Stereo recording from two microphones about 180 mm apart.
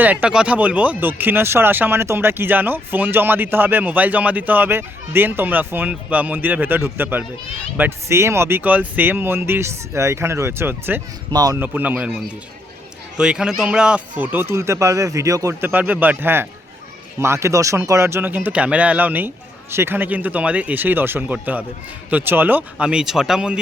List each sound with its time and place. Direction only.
0.0 s speech: 10° right (ahead or behind)
11.6 s speech: 10° right (ahead or behind)